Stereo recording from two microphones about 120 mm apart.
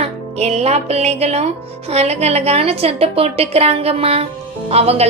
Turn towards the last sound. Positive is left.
turn(degrees=-55)  # may be behind; listen again after turning